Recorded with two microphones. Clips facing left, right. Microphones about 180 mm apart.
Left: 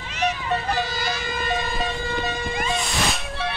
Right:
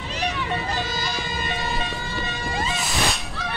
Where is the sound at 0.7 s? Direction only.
60° left (ahead or behind).